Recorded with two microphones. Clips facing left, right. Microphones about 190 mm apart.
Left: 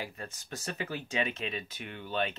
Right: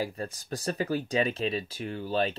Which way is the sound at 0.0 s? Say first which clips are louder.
Right 8 dB; 35° right (ahead or behind).